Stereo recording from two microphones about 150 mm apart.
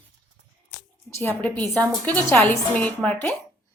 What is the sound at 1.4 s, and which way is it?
Speech, 10° left (ahead or behind).